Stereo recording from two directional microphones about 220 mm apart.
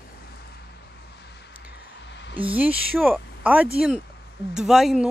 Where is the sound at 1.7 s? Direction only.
50° left (ahead or behind).